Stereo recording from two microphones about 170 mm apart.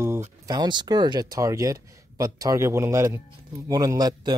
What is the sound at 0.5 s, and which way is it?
Speech, 25° right (ahead or behind).